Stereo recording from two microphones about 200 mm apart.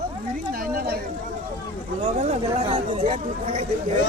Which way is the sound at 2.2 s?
35° right (ahead or behind).